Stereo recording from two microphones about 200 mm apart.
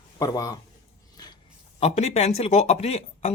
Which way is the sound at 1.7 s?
30° left (ahead or behind).